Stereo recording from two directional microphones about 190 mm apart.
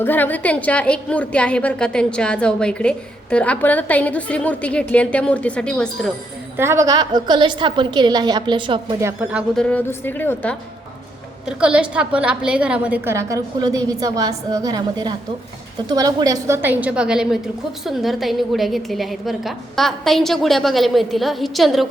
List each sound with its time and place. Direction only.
0.0 s a woman's voice: 10° left (ahead or behind)
6.6 s a woman's voice: 15° right (ahead or behind)
9.0 s a woman's voice: 10° right (ahead or behind)
9.6 s a woman's voice: 5° left (ahead or behind)
11.4 s a woman's voice: 5° right (ahead or behind)